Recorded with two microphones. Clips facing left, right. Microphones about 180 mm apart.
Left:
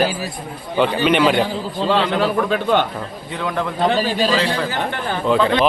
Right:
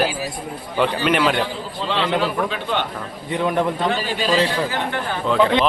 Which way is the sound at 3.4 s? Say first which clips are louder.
Right 3 dB; 20° right (ahead or behind).